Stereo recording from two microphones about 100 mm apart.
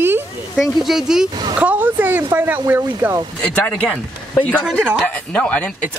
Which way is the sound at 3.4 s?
10° left (ahead or behind).